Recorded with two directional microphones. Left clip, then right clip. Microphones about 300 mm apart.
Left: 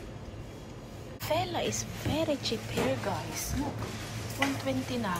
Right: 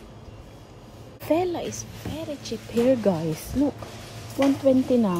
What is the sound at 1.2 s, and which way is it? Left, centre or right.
Speech, right.